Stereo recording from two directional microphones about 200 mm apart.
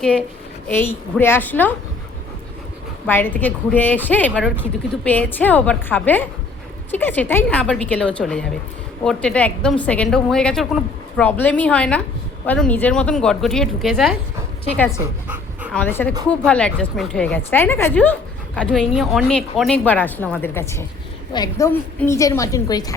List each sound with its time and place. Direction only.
0.0 s a woman's voice: 5° left (ahead or behind)
3.1 s a woman's voice: 10° left (ahead or behind)
15.7 s a woman's voice: 10° left (ahead or behind)